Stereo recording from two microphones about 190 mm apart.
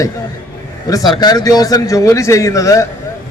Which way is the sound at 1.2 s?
20° left (ahead or behind).